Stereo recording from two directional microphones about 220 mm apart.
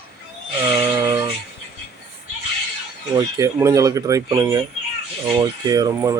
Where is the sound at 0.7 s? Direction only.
10° right (ahead or behind).